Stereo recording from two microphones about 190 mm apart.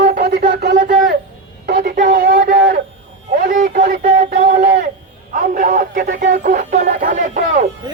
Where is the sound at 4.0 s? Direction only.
40° right (ahead or behind).